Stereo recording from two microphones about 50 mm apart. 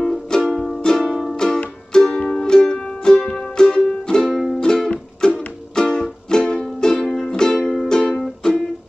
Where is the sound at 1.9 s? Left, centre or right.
Centre.